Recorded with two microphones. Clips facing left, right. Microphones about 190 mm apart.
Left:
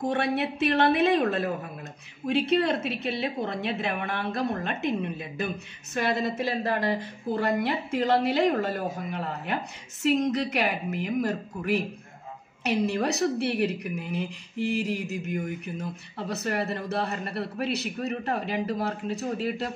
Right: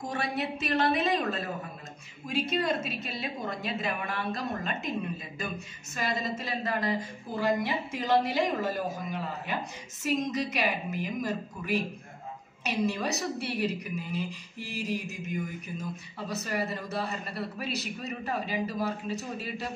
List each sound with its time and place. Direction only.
0.0 s a woman's voice: 60° left (ahead or behind)
6.6 s speech: 30° left (ahead or behind)
7.0 s a woman's voice: 65° left (ahead or behind)